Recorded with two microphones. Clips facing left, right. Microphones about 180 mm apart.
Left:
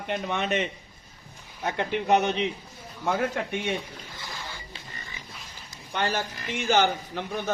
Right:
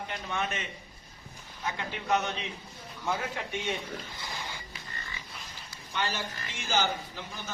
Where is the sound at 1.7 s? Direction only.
65° left (ahead or behind).